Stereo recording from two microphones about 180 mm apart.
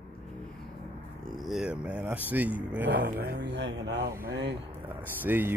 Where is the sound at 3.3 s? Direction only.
65° right (ahead or behind).